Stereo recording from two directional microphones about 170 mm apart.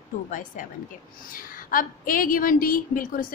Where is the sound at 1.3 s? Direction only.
55° left (ahead or behind).